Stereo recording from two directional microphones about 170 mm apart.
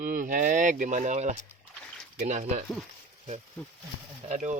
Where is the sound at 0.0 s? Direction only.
50° right (ahead or behind).